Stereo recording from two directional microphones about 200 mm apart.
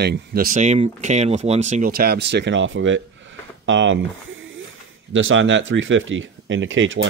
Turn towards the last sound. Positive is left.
turn(degrees=-75)  # may be behind; listen again after turning